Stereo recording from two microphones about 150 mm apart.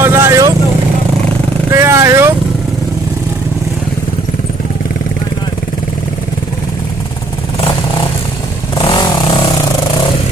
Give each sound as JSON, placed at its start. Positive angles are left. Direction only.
{"t": 0.0, "sound": "vehicle", "side_deg": -15}
{"t": 1.7, "sound": "vehicle", "side_deg": -20}
{"t": 7.6, "sound": "vehicle", "side_deg": 35}